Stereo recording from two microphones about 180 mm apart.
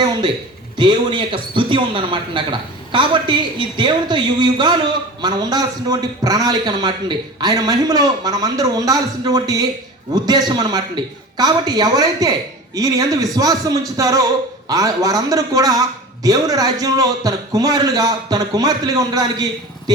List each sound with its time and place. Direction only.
0.8 s a man's voice: 25° right (ahead or behind)